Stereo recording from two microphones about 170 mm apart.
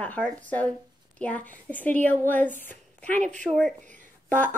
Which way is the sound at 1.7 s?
10° left (ahead or behind).